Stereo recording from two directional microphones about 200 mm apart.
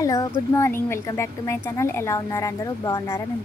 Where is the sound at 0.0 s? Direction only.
15° left (ahead or behind).